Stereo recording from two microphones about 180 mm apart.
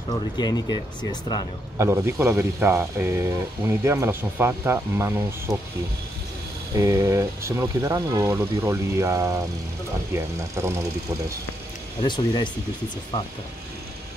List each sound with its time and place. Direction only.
0.4 s speech: 25° left (ahead or behind)
1.8 s speech: 15° right (ahead or behind)
6.8 s speech: 15° right (ahead or behind)
12.0 s speech: 25° left (ahead or behind)